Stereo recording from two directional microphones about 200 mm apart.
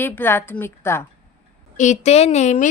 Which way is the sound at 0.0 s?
10° left (ahead or behind).